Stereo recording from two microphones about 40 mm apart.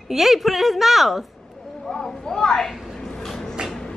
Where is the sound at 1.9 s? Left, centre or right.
Centre.